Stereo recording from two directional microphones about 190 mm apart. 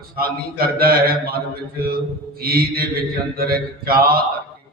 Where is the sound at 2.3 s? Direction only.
55° right (ahead or behind).